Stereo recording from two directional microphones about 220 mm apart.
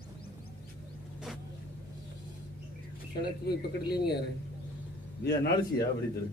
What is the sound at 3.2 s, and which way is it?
Speech, 45° left (ahead or behind).